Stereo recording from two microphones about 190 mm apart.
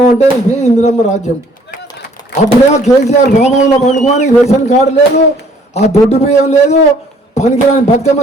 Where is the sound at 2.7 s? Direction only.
35° left (ahead or behind).